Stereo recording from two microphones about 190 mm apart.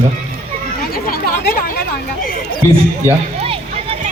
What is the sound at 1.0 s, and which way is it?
Chatter, 50° left (ahead or behind).